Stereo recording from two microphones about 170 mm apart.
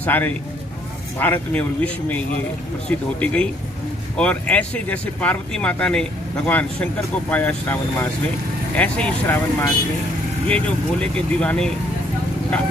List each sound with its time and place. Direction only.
0.0 s speech: 10° left (ahead or behind)